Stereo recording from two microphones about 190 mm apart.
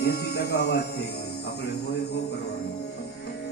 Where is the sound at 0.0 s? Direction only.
60° left (ahead or behind).